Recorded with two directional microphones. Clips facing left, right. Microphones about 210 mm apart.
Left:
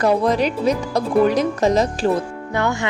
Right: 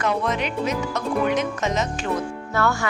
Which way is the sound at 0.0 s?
35° left (ahead or behind).